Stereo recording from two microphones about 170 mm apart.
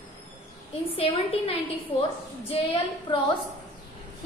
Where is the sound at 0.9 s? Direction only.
35° left (ahead or behind).